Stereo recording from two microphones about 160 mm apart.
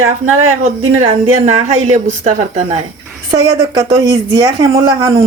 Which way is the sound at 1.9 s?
45° right (ahead or behind).